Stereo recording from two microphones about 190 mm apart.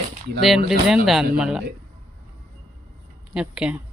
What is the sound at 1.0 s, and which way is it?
Speech, 5° right (ahead or behind).